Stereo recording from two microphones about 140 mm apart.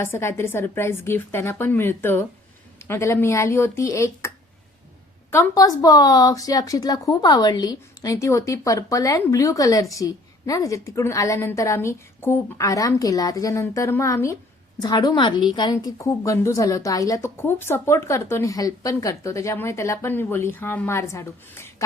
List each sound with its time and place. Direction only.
0.0 s a woman's voice: 20° left (ahead or behind)
5.3 s a woman's voice: 25° left (ahead or behind)